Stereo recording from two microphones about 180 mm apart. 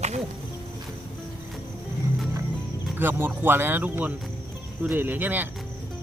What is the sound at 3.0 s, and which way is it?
Speech, 10° right (ahead or behind).